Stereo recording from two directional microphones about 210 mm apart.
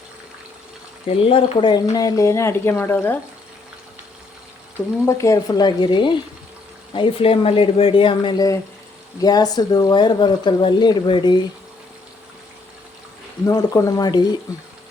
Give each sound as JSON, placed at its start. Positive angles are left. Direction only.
{"t": 1.0, "sound": "speech", "side_deg": 25}
{"t": 5.0, "sound": "speech", "side_deg": 15}
{"t": 13.4, "sound": "speech", "side_deg": 15}